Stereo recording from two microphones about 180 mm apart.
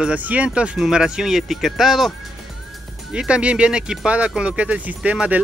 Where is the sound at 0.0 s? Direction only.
10° right (ahead or behind).